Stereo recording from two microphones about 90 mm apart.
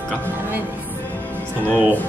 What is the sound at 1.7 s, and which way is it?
Speech, 20° left (ahead or behind).